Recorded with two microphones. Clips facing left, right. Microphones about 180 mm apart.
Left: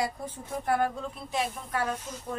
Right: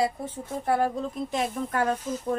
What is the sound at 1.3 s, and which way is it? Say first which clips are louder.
Speech: right 1 dB; 45° right (ahead or behind).